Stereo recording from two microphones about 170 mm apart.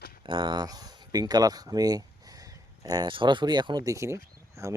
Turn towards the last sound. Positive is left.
turn(degrees=-15)  # may be behind; listen again after turning